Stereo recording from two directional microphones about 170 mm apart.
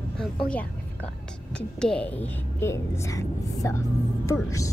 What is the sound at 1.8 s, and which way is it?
Speech, 5° left (ahead or behind).